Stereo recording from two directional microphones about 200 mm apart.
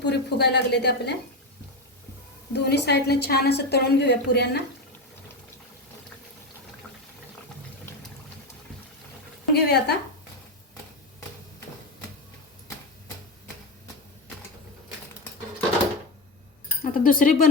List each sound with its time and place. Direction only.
0.0 s a woman's voice: 60° left (ahead or behind)
2.5 s a woman's voice: 55° left (ahead or behind)
9.5 s a woman's voice: 55° left (ahead or behind)
16.8 s speech: 45° left (ahead or behind)